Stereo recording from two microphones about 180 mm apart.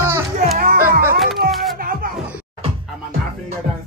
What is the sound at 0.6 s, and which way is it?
Music, 55° right (ahead or behind).